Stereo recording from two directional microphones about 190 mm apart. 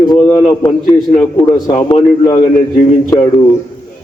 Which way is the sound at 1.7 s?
25° left (ahead or behind).